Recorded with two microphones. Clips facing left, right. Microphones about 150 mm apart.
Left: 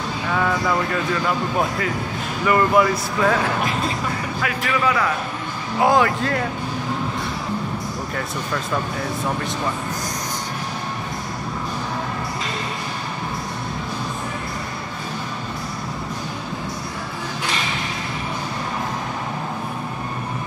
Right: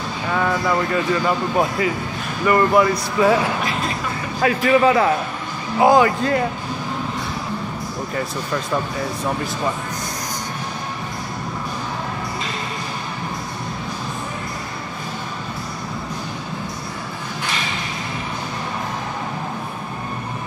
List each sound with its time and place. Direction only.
0.3 s speech: 5° right (ahead or behind)
4.4 s a man's voice: 30° right (ahead or behind)
5.8 s speech: centre (ahead or behind)